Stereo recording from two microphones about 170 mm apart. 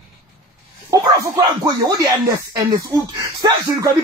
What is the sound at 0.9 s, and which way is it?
Speech, 20° right (ahead or behind).